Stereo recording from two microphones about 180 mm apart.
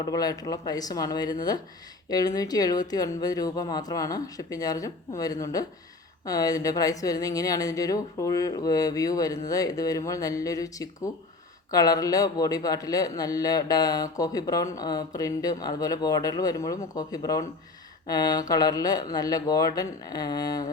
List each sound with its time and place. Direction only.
0.0 s a man's voice: 20° left (ahead or behind)